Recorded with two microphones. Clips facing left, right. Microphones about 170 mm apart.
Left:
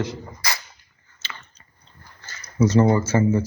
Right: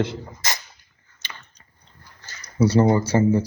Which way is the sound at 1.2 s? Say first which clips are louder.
Left 2 dB; 15° right (ahead or behind).